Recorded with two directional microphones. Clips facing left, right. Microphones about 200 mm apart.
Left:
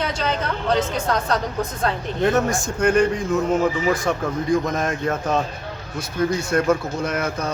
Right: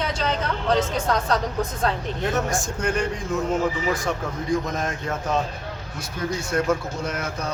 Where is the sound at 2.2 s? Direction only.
60° left (ahead or behind).